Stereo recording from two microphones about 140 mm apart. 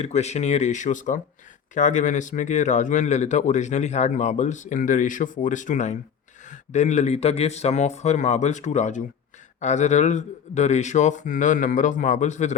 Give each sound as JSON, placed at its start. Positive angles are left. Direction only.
{"t": 0.0, "sound": "speech", "side_deg": 50}